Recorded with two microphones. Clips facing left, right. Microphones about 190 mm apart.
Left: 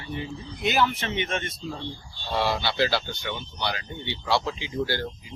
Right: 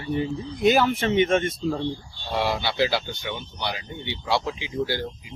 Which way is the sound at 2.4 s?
15° right (ahead or behind).